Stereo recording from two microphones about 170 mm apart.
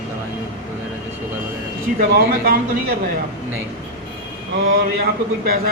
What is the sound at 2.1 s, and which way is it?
Speech, 60° right (ahead or behind).